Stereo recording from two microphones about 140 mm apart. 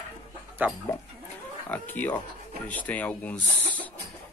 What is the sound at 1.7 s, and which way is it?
Speech, 10° left (ahead or behind).